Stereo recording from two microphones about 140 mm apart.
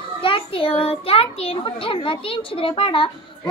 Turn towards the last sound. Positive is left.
turn(degrees=40)  # may be behind; listen again after turning